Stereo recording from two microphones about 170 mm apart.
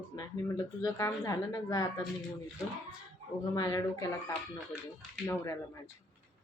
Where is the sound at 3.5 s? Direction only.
20° left (ahead or behind).